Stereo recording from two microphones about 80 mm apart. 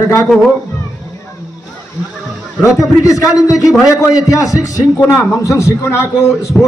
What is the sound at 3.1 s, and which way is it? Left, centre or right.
A man's voice, left.